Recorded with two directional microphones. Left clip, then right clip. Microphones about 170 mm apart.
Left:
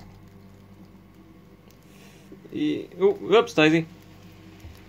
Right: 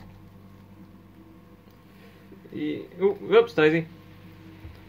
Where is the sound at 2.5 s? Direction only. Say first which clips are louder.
Left 4 dB; 20° left (ahead or behind).